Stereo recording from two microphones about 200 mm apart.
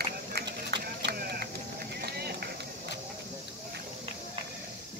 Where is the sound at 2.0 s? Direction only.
50° right (ahead or behind).